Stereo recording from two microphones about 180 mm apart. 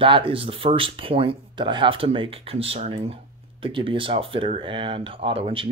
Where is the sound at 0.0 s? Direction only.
30° right (ahead or behind).